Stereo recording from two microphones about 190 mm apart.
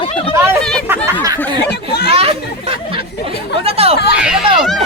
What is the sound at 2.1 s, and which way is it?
Speech, 30° right (ahead or behind).